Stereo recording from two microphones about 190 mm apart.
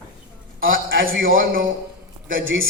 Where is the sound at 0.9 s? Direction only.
90° right.